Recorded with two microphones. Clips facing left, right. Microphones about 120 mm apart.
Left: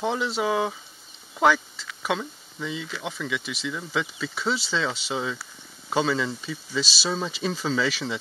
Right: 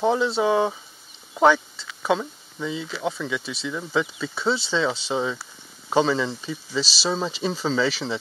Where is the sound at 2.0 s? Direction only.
35° right (ahead or behind).